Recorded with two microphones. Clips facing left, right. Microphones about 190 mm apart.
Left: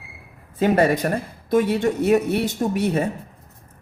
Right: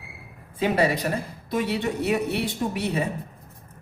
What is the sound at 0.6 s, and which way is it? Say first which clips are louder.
Speech: left 5 dB; 50° left (ahead or behind).